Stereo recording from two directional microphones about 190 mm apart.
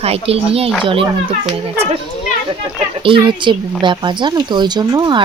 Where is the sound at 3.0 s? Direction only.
25° right (ahead or behind).